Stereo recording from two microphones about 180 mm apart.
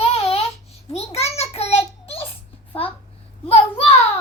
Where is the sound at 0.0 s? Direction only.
35° left (ahead or behind).